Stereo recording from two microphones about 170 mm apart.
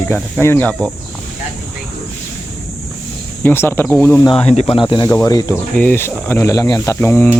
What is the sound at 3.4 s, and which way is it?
Speech, 15° left (ahead or behind).